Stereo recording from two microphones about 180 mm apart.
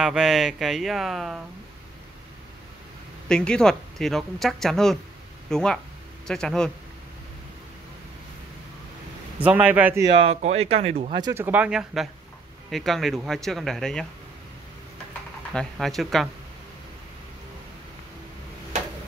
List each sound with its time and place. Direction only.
0.0 s speech: 5° right (ahead or behind)
3.3 s speech: 5° left (ahead or behind)
9.4 s speech: 10° right (ahead or behind)
10.1 s speech: 35° right (ahead or behind)
11.1 s speech: 15° right (ahead or behind); by 14.0 s 5° left (ahead or behind)
15.5 s speech: centre (ahead or behind)